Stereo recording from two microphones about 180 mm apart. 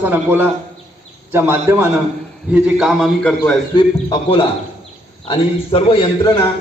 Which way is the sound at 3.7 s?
25° left (ahead or behind).